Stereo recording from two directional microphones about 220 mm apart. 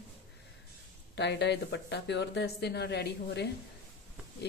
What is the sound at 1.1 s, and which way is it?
Speech, 50° left (ahead or behind).